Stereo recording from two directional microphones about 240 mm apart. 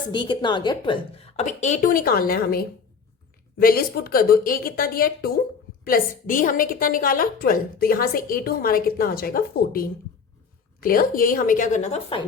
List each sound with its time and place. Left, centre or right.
0.1 s a woman's voice: centre